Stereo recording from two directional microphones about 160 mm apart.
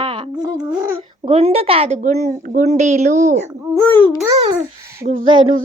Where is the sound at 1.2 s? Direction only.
40° right (ahead or behind).